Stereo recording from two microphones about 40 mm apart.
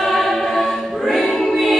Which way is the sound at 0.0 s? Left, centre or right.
Centre.